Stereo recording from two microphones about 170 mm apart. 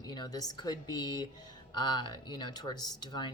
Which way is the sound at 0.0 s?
25° left (ahead or behind).